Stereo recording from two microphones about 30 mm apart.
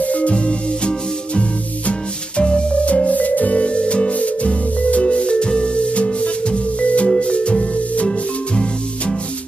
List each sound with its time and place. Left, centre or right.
0.0 s music: left
0.3 s music: left
2.7 s music: left
3.1 s music: left
3.5 s music: left
5.0 s music: left